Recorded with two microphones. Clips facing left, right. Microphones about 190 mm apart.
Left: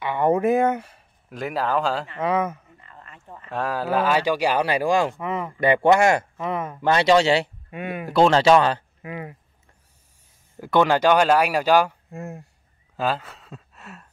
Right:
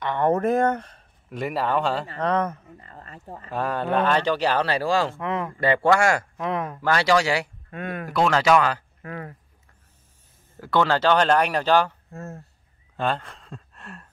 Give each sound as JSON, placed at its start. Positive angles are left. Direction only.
{"t": 0.0, "sound": "speech", "side_deg": 10}
{"t": 2.8, "sound": "a sound", "side_deg": -40}
{"t": 3.4, "sound": "speech", "side_deg": 0}
{"t": 5.2, "sound": "speech", "side_deg": 5}
{"t": 5.6, "sound": "speech", "side_deg": 20}
{"t": 6.3, "sound": "speech", "side_deg": 0}
{"t": 6.8, "sound": "speech", "side_deg": 20}
{"t": 7.7, "sound": "speech", "side_deg": 10}
{"t": 8.1, "sound": "speech", "side_deg": 30}
{"t": 9.0, "sound": "speech", "side_deg": 10}
{"t": 10.6, "sound": "speech", "side_deg": 15}
{"t": 12.9, "sound": "speech", "side_deg": 5}